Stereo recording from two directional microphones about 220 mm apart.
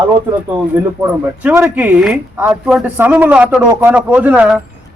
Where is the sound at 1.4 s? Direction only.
10° right (ahead or behind).